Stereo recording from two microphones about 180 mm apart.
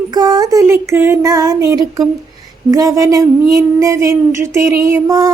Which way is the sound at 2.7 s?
15° right (ahead or behind).